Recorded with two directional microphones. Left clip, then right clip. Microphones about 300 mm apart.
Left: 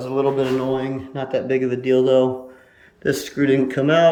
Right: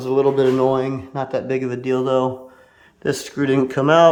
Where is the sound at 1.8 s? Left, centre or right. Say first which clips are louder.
Left 3 dB; right.